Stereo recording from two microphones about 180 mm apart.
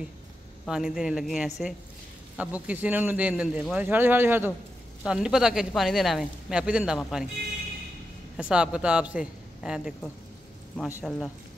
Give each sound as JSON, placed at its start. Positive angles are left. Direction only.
{"t": 0.7, "sound": "a man's voice", "side_deg": -5}
{"t": 8.4, "sound": "a man's voice", "side_deg": -5}
{"t": 11.1, "sound": "a man's voice", "side_deg": -5}